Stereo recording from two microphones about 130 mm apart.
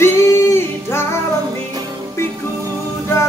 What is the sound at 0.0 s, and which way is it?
Singing, 20° left (ahead or behind).